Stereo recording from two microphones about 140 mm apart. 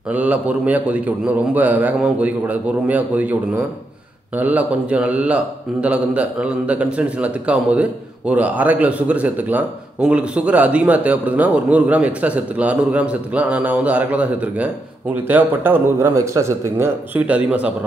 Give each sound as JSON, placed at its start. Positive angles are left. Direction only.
{"t": 0.1, "sound": "speech", "side_deg": -10}